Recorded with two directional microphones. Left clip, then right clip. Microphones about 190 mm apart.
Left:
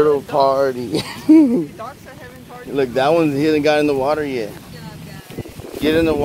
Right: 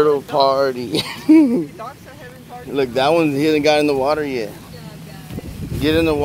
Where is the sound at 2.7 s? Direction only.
10° right (ahead or behind).